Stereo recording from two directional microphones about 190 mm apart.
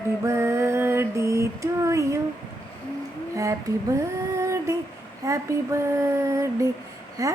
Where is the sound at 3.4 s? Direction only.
15° right (ahead or behind).